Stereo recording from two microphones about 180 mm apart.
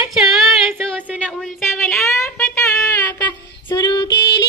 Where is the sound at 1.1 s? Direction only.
5° left (ahead or behind).